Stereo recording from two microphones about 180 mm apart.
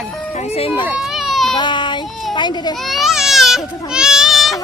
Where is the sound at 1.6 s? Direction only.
25° left (ahead or behind).